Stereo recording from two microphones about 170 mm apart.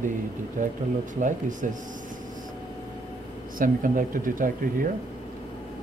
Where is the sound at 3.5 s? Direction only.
55° right (ahead or behind).